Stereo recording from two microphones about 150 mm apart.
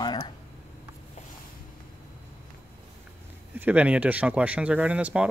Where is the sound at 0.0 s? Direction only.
30° left (ahead or behind).